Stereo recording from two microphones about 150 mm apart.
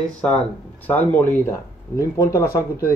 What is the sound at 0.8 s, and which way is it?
Speech, 10° left (ahead or behind).